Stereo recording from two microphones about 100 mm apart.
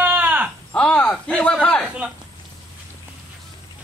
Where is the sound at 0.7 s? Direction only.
15° left (ahead or behind).